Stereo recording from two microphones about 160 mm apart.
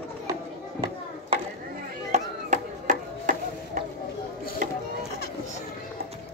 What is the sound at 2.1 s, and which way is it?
Chopping, 50° right (ahead or behind).